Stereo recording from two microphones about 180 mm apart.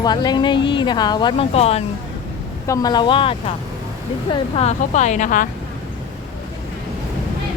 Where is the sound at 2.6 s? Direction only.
20° left (ahead or behind); by 5.5 s 45° left (ahead or behind).